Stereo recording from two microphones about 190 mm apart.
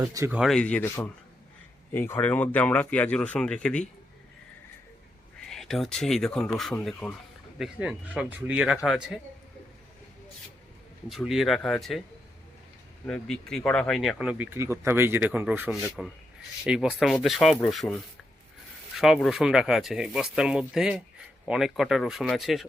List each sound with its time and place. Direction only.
0.0 s speech: 15° right (ahead or behind)
0.3 s speech: centre (ahead or behind)
5.5 s speech: centre (ahead or behind)
7.6 s speech: 5° right (ahead or behind)
11.1 s speech: centre (ahead or behind)
13.1 s speech: 5° left (ahead or behind)